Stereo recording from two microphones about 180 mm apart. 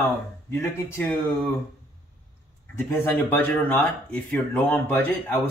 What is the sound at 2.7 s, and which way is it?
Speech, 15° left (ahead or behind).